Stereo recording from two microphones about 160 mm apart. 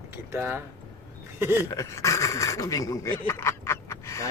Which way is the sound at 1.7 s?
20° left (ahead or behind).